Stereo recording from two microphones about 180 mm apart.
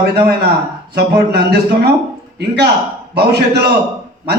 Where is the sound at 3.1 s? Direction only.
65° right (ahead or behind).